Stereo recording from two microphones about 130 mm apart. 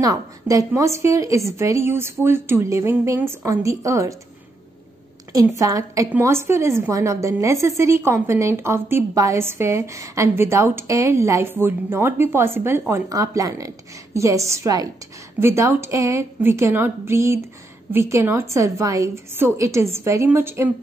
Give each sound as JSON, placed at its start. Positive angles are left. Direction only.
{"t": 0.0, "sound": "a woman's voice", "side_deg": -25}
{"t": 5.6, "sound": "a woman's voice", "side_deg": -25}